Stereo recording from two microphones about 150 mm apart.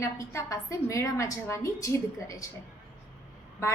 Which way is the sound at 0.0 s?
20° left (ahead or behind).